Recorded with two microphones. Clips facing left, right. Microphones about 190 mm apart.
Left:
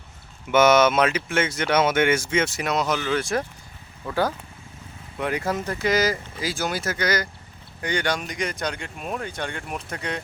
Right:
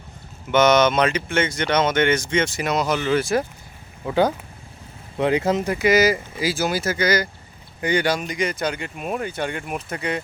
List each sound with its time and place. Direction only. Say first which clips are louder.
0.5 s speech: right 1 dB; 5° left (ahead or behind)
4.0 s speech: right 5 dB; 20° right (ahead or behind)